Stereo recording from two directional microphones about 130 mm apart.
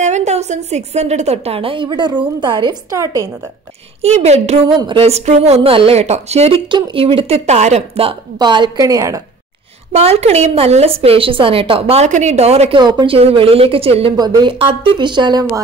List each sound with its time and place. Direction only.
0.0 s a woman's voice: 60° right (ahead or behind); by 3.3 s 25° right (ahead or behind)
4.0 s a woman's voice: 55° right (ahead or behind)
4.6 s a woman's voice: 40° right (ahead or behind); by 6.6 s 55° right (ahead or behind)
6.7 s a woman's voice: 45° right (ahead or behind)
8.4 s a woman's voice: 35° right (ahead or behind)
9.9 s a woman's voice: 50° right (ahead or behind)
12.7 s a woman's voice: 35° right (ahead or behind)
14.1 s speech: 30° right (ahead or behind)